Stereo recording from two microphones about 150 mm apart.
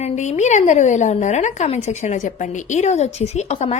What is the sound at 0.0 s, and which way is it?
A woman's voice, 50° left (ahead or behind).